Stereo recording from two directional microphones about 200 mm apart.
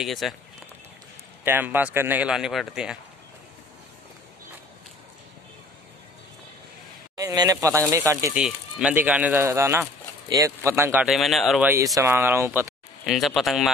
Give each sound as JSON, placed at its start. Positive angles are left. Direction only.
{"t": 0.0, "sound": "speech", "side_deg": 0}
{"t": 1.4, "sound": "speech", "side_deg": -10}
{"t": 7.2, "sound": "speech", "side_deg": -15}
{"t": 8.4, "sound": "speech", "side_deg": -5}
{"t": 11.7, "sound": "speech", "side_deg": -15}
{"t": 13.0, "sound": "speech", "side_deg": 0}